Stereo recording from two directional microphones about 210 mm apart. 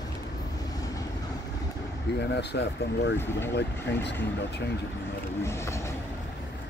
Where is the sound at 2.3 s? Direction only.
55° left (ahead or behind).